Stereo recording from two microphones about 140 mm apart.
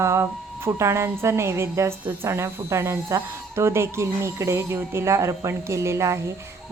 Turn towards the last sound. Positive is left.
turn(degrees=-20)  # may be behind; listen again after turning